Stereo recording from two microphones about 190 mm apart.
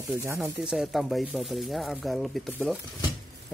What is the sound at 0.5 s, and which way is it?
Speech, 5° right (ahead or behind).